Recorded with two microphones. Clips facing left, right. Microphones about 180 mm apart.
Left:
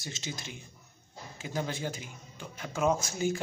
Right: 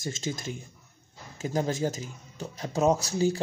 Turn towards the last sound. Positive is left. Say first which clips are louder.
# right 4 dB
turn(degrees=-35)  # may be behind; listen again after turning